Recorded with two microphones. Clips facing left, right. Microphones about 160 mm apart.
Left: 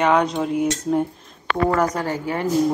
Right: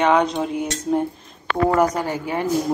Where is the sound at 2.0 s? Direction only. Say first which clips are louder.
Even; 20° right (ahead or behind).